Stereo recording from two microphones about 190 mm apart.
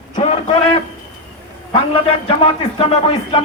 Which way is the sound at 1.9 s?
30° left (ahead or behind).